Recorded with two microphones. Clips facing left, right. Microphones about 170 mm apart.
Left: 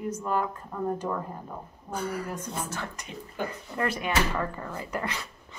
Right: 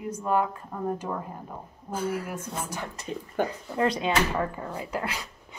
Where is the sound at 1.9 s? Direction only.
5° right (ahead or behind).